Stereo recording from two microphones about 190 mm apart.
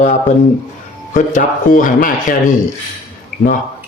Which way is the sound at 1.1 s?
45° left (ahead or behind).